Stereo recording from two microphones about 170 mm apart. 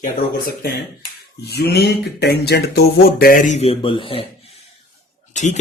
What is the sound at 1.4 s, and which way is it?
Speech, 75° left (ahead or behind).